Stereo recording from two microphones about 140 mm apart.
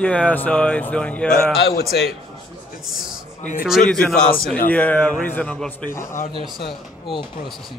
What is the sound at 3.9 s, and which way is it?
A man's voice, 5° left (ahead or behind).